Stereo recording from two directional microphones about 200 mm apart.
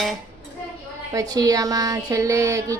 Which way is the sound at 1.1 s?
20° right (ahead or behind).